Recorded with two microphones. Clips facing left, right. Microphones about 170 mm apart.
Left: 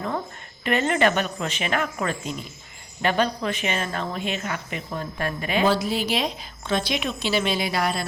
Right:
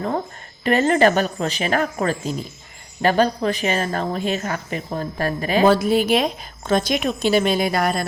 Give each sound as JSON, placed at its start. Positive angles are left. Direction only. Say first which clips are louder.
{"t": 0.6, "sound": "a woman's voice", "louder": "right 5 dB", "side_deg": -40}
{"t": 5.7, "sound": "a woman's voice", "louder": "right 7 dB", "side_deg": -50}